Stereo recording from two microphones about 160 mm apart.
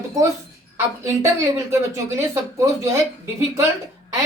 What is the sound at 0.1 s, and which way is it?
A woman's voice, 20° right (ahead or behind).